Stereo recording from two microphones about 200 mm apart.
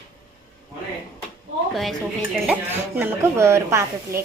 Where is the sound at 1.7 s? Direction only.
Centre (ahead or behind).